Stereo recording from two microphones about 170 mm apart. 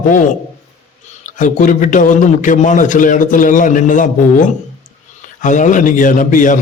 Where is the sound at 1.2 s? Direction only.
50° left (ahead or behind).